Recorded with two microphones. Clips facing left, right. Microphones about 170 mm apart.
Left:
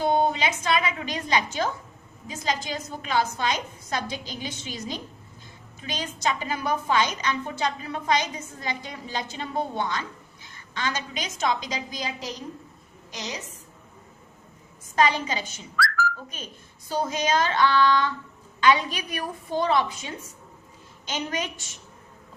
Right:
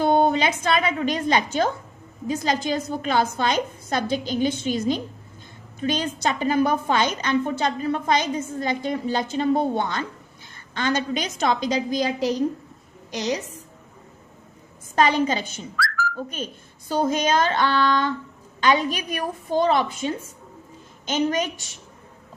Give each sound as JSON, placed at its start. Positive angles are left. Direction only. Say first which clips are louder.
{"t": 0.0, "sound": "a woman's voice", "louder": "right 4 dB", "side_deg": -60}
{"t": 2.2, "sound": "a woman's voice", "louder": "right 6 dB", "side_deg": -60}
{"t": 14.9, "sound": "a woman's voice", "louder": "right 4 dB", "side_deg": -50}
{"t": 17.1, "sound": "a woman's voice", "louder": "right 3 dB", "side_deg": -55}
{"t": 21.1, "sound": "a woman's voice", "louder": "right 8 dB", "side_deg": -45}